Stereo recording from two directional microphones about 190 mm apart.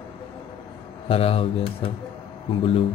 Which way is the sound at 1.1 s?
30° left (ahead or behind).